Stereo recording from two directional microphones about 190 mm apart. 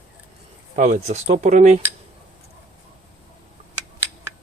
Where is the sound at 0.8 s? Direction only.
40° right (ahead or behind).